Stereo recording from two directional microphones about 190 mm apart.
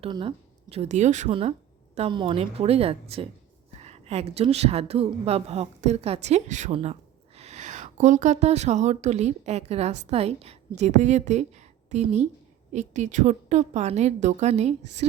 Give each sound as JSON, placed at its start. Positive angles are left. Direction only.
{"t": 0.0, "sound": "a woman's voice", "side_deg": -25}